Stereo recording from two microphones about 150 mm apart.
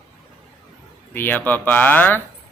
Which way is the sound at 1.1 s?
15° left (ahead or behind).